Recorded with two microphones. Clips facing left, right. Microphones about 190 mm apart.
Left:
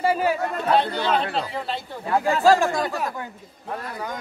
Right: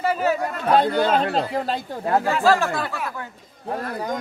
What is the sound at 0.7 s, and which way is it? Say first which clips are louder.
Speech: right 4 dB; 45° right (ahead or behind).